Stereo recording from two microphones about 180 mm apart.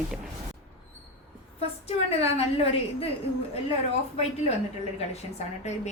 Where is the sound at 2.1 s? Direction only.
35° left (ahead or behind).